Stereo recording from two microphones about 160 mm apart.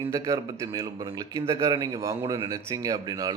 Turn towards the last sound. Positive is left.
turn(degrees=-25)  # may be behind; listen again after turning